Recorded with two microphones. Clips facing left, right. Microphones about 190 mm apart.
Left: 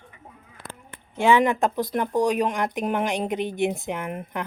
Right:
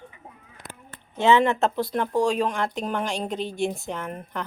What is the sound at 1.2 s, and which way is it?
Speech, 10° left (ahead or behind).